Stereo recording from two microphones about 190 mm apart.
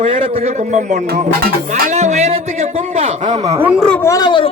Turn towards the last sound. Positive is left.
turn(degrees=25)  # may be behind; listen again after turning